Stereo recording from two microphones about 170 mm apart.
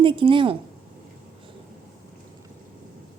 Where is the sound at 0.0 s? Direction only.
30° right (ahead or behind).